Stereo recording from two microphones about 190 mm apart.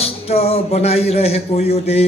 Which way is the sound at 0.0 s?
30° left (ahead or behind).